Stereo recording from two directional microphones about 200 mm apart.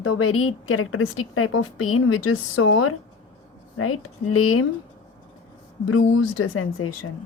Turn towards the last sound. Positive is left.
turn(degrees=90)